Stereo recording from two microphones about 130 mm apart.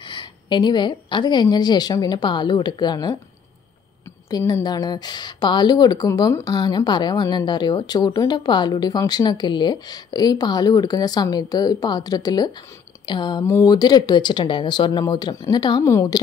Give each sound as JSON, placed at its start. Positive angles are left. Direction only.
{"t": 0.0, "sound": "a woman's voice", "side_deg": 40}
{"t": 4.3, "sound": "a woman's voice", "side_deg": 30}
{"t": 13.0, "sound": "a sound", "side_deg": 35}
{"t": 13.5, "sound": "a woman's voice", "side_deg": 25}